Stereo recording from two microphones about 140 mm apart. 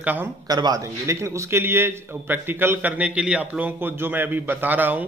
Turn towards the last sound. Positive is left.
turn(degrees=-10)  # may be behind; listen again after turning